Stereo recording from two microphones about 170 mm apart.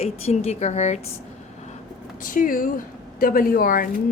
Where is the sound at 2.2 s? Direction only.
55° left (ahead or behind).